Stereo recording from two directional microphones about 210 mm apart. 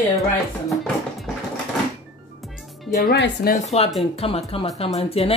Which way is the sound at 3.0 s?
50° left (ahead or behind).